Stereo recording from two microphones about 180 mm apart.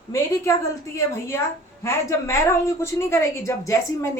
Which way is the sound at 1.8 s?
15° left (ahead or behind).